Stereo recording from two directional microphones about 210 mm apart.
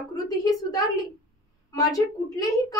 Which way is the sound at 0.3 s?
15° left (ahead or behind).